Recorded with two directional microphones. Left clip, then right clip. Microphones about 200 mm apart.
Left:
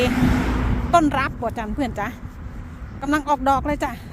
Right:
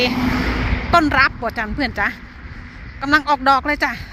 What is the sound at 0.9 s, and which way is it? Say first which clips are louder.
Speech: right 4 dB; 5° left (ahead or behind).